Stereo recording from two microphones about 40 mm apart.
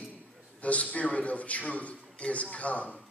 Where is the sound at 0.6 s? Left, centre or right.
Left.